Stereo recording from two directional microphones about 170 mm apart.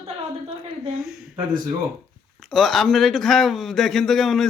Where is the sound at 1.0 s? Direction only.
5° right (ahead or behind).